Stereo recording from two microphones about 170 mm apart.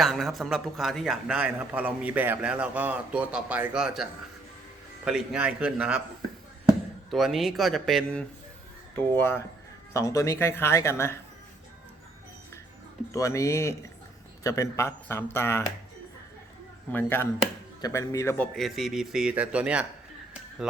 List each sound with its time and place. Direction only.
0.0 s a man's voice: centre (ahead or behind)
7.1 s a man's voice: centre (ahead or behind)
9.9 s speech: 20° left (ahead or behind)
13.1 s speech: 20° left (ahead or behind)
16.9 s speech: 10° left (ahead or behind)
18.5 s a man's voice: centre (ahead or behind)